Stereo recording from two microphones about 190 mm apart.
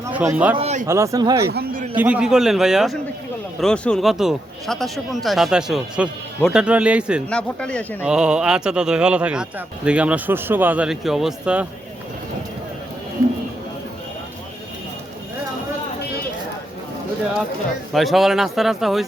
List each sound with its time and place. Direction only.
0.0 s a man's voice: 10° right (ahead or behind)
0.5 s speech: 35° right (ahead or behind)
0.9 s speech: 15° right (ahead or behind)
1.5 s a sound: 55° right (ahead or behind)
2.0 s speech: 5° right (ahead or behind)
7.3 s speech: 5° left (ahead or behind)
17.9 s speech: centre (ahead or behind)